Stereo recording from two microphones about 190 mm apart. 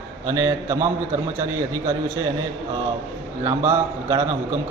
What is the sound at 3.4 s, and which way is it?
Speech, 15° right (ahead or behind).